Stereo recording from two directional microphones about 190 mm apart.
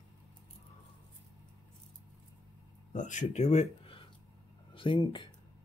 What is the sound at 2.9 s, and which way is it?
Speech, 40° left (ahead or behind).